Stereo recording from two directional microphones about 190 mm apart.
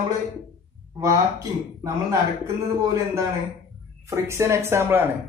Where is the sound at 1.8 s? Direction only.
15° right (ahead or behind).